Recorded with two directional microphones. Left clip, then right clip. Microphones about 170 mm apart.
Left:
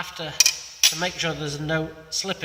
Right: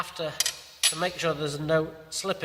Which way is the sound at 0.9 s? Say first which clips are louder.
Left 1 dB; 30° right (ahead or behind).